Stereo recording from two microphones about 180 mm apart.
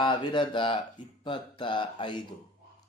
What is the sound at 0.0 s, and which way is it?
Speech, 25° left (ahead or behind).